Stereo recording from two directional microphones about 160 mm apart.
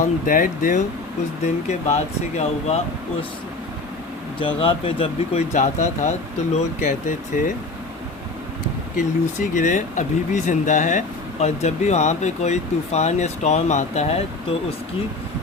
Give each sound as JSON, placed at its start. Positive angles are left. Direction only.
{"t": 0.0, "sound": "speech", "side_deg": 60}
{"t": 2.4, "sound": "speech", "side_deg": 40}
{"t": 4.4, "sound": "speech", "side_deg": 30}
{"t": 9.0, "sound": "speech", "side_deg": 50}